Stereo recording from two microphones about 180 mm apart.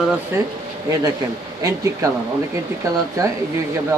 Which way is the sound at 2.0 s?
15° right (ahead or behind).